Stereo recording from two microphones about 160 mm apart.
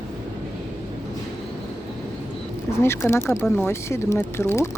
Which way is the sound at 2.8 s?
15° left (ahead or behind).